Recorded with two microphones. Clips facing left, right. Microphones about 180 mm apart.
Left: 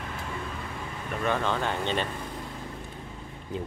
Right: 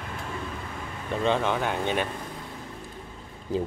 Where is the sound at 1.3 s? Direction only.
15° right (ahead or behind).